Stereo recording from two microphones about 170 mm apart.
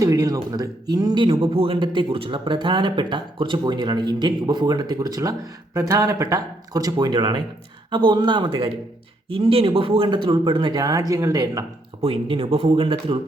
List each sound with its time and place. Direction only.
0.0 s speech: 20° right (ahead or behind)
12.0 s speech: 30° right (ahead or behind)